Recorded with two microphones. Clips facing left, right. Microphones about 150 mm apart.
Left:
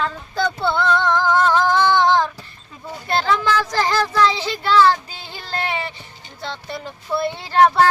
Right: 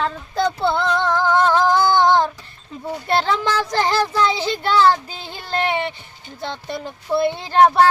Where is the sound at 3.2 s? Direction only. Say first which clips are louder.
Left 5 dB; 30° right (ahead or behind).